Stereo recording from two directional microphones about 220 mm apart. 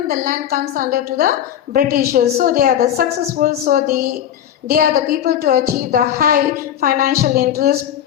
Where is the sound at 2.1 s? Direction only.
40° right (ahead or behind).